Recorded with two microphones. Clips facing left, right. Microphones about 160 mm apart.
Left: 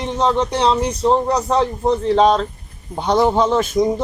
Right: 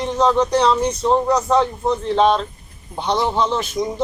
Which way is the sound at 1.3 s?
35° left (ahead or behind).